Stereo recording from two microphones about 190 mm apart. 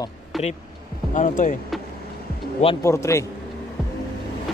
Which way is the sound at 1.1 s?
40° left (ahead or behind).